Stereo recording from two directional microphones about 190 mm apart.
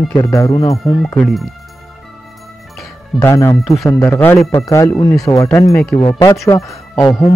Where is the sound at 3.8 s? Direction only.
10° left (ahead or behind).